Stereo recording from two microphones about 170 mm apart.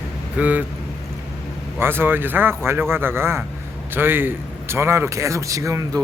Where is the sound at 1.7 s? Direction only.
15° right (ahead or behind).